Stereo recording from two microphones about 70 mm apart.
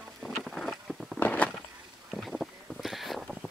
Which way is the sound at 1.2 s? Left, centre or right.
Left.